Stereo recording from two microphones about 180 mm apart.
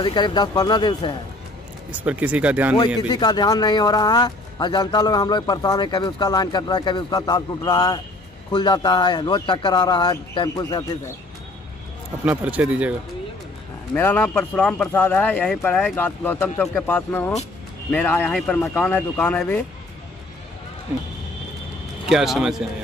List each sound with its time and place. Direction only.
0.0 s speech: 25° left (ahead or behind)
1.9 s speech: 10° right (ahead or behind)
3.1 s speech: 25° left (ahead or behind)
12.3 s speech: 10° right (ahead or behind)
13.9 s speech: 10° left (ahead or behind)
22.1 s speech: centre (ahead or behind)